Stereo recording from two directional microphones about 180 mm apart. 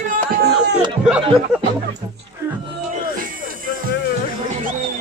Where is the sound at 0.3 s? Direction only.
65° right (ahead or behind).